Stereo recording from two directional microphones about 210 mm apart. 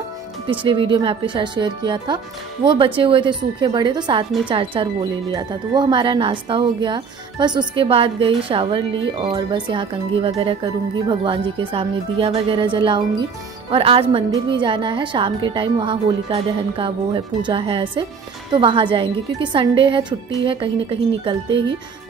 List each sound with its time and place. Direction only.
0.5 s a woman's voice: 25° right (ahead or behind)